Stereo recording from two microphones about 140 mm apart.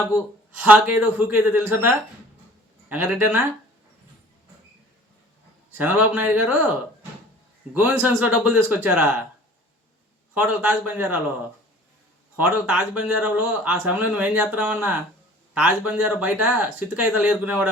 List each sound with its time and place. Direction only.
0.6 s a man's voice: 10° right (ahead or behind)
2.9 s a man's voice: 10° right (ahead or behind)
5.7 s a man's voice: 10° right (ahead or behind)
7.9 s a man's voice: 10° right (ahead or behind)
10.3 s a man's voice: 10° right (ahead or behind)
12.4 s a man's voice: 10° right (ahead or behind)